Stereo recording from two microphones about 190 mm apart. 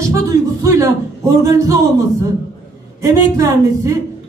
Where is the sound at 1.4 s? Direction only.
15° right (ahead or behind).